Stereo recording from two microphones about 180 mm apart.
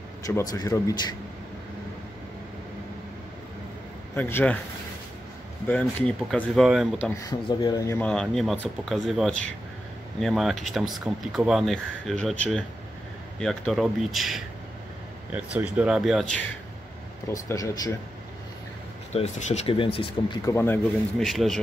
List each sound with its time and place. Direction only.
0.3 s a man's voice: 20° left (ahead or behind)
4.1 s speech: 10° left (ahead or behind)
5.7 s speech: 5° left (ahead or behind)
7.0 s speech: 15° left (ahead or behind)
17.3 s a man's voice: 15° left (ahead or behind)
19.1 s speech: 35° left (ahead or behind)
20.4 s speech: 15° left (ahead or behind)
21.2 s speech: centre (ahead or behind)